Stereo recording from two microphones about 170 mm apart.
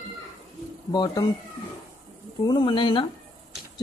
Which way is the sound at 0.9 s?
25° left (ahead or behind).